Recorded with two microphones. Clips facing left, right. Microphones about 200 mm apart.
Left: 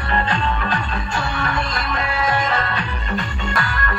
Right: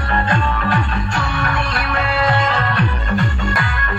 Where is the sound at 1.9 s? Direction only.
75° right (ahead or behind).